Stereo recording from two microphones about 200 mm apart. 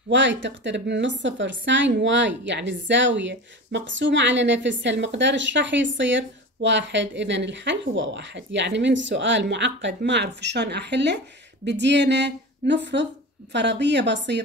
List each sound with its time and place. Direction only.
0.1 s a woman's voice: 65° right (ahead or behind)